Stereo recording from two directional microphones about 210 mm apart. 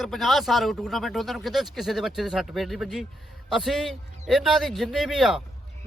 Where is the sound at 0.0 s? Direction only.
Centre (ahead or behind).